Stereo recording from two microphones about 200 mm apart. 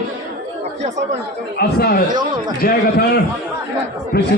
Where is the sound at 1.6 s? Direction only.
50° left (ahead or behind).